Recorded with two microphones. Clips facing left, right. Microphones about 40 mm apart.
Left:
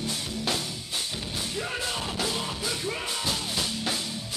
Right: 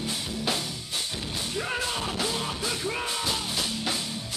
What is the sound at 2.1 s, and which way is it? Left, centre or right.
Music, centre.